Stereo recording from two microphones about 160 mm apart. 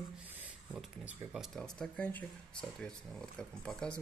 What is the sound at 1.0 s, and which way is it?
Speech, 5° right (ahead or behind).